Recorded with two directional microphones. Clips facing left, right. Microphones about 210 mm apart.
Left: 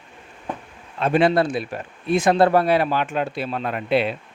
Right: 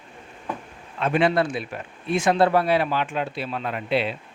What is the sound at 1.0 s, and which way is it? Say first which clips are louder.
Speech: left 3 dB; 35° left (ahead or behind).